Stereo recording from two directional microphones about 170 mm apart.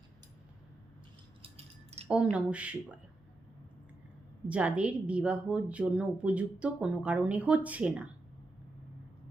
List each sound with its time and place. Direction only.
1.4 s a sound: 35° right (ahead or behind)
2.3 s a woman's voice: 5° right (ahead or behind)
4.4 s a woman's voice: 5° right (ahead or behind)